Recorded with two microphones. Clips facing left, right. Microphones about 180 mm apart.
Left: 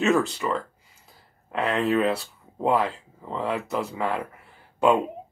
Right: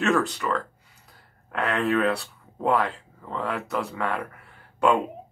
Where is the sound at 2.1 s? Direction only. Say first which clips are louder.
Left 1 dB; 5° left (ahead or behind).